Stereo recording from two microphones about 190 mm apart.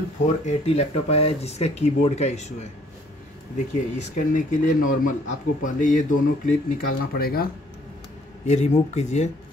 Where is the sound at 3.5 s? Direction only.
40° left (ahead or behind).